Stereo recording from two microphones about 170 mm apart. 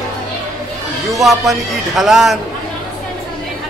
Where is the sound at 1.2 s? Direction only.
Centre (ahead or behind).